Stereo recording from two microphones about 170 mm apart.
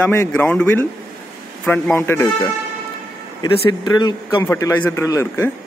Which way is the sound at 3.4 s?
30° left (ahead or behind).